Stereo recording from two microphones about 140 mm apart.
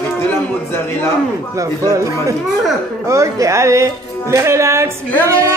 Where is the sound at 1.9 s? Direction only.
20° right (ahead or behind).